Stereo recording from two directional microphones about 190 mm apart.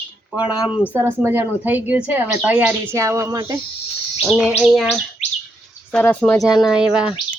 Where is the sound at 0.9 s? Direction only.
10° right (ahead or behind).